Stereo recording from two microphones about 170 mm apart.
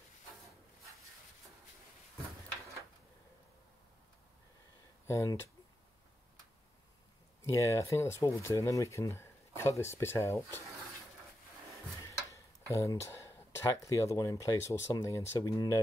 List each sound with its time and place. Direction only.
5.0 s speech: 15° left (ahead or behind)
7.4 s speech: 15° left (ahead or behind)
12.0 s tick-tock: 20° left (ahead or behind)
13.8 s speech: 20° left (ahead or behind)